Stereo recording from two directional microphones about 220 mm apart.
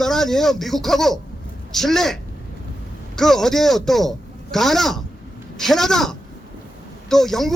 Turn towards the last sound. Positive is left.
turn(degrees=0)  # may be behind; listen again after turning